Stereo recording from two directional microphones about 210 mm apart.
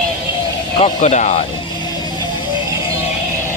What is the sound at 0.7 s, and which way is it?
Speech, 30° left (ahead or behind).